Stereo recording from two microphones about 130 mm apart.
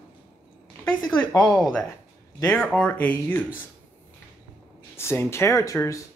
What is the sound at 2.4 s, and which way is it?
Speech, 15° left (ahead or behind).